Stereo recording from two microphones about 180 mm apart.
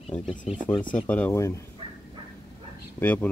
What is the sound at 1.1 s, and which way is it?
Speech, 10° left (ahead or behind).